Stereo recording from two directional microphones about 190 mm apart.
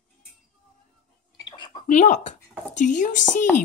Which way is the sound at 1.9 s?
40° left (ahead or behind).